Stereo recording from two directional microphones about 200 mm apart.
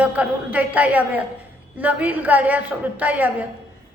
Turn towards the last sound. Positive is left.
turn(degrees=-10)  # may be behind; listen again after turning